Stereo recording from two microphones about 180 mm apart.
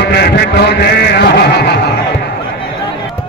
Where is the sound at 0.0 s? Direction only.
65° left (ahead or behind).